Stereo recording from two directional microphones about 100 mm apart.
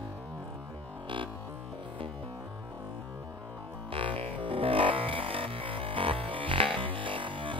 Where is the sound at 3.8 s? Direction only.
65° right (ahead or behind).